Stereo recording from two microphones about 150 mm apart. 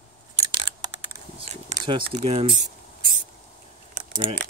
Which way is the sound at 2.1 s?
40° right (ahead or behind).